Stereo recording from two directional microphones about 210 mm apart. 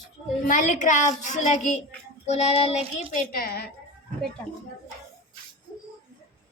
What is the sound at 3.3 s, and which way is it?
Speech, 45° left (ahead or behind).